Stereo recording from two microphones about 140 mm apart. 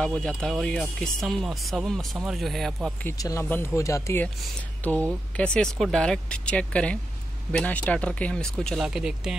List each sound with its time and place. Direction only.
0.0 s speech: 5° left (ahead or behind)
3.2 s speech: 25° left (ahead or behind); by 9.4 s 5° right (ahead or behind)